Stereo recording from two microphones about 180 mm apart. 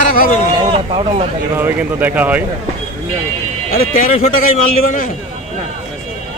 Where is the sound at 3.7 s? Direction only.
50° left (ahead or behind).